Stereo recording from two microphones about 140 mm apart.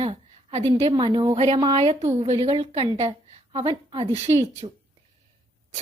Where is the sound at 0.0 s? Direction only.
45° right (ahead or behind).